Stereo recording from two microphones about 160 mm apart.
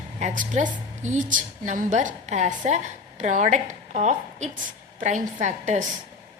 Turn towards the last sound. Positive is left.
turn(degrees=-50)  # may be behind; listen again after turning